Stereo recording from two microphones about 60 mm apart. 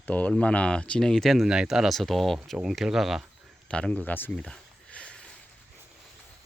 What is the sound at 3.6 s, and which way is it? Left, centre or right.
Speech, centre.